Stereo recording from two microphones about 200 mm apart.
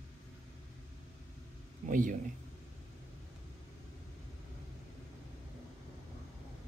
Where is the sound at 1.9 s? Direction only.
40° right (ahead or behind).